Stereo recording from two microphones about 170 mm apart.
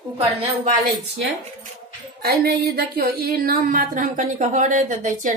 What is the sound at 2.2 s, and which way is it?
Speech, 70° right (ahead or behind).